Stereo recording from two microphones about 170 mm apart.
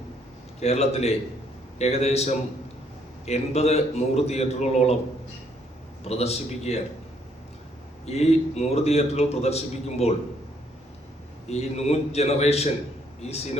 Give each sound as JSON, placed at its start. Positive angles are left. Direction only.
{"t": 0.6, "sound": "a man's voice", "side_deg": 40}
{"t": 6.1, "sound": "a man's voice", "side_deg": 40}
{"t": 8.0, "sound": "a man's voice", "side_deg": 40}
{"t": 11.4, "sound": "a man's voice", "side_deg": 40}